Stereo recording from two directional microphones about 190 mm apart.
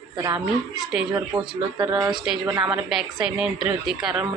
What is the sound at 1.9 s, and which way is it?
Speech, 20° right (ahead or behind).